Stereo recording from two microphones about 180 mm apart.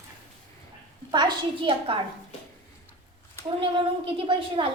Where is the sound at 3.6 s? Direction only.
30° right (ahead or behind).